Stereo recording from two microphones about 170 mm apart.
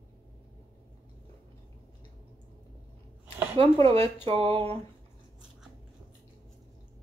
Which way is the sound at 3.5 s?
35° right (ahead or behind).